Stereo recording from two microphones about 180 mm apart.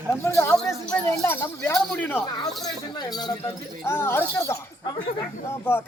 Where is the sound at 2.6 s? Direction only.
20° left (ahead or behind).